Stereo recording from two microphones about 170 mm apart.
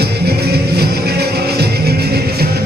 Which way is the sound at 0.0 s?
70° right (ahead or behind).